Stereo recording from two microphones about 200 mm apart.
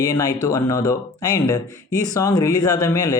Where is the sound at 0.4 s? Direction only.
15° left (ahead or behind).